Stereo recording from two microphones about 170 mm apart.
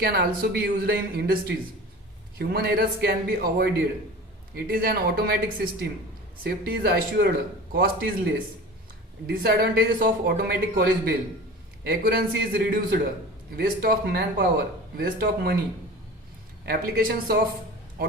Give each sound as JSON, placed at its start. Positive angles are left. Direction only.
{"t": 0.0, "sound": "speech", "side_deg": -70}
{"t": 2.4, "sound": "speech", "side_deg": -65}
{"t": 16.6, "sound": "speech", "side_deg": -60}